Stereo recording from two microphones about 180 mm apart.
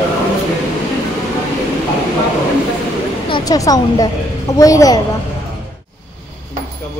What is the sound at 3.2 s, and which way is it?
A woman's voice, 25° left (ahead or behind).